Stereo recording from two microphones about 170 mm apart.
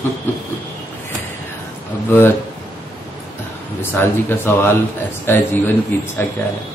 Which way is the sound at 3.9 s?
15° left (ahead or behind).